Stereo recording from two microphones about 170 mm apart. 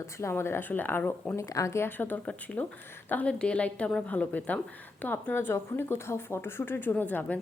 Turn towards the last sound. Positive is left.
turn(degrees=10)  # may be behind; listen again after turning